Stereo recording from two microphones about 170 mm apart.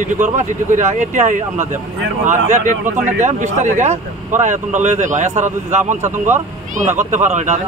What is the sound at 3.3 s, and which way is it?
Speech, 50° right (ahead or behind).